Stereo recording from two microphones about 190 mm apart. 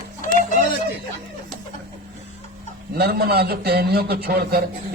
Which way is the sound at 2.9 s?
55° right (ahead or behind).